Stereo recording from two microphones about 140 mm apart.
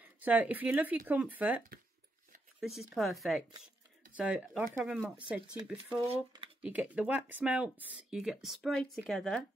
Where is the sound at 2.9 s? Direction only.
Centre (ahead or behind).